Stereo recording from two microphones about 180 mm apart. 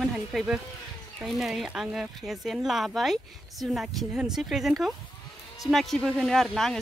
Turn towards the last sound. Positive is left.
turn(degrees=0)  # may be behind; listen again after turning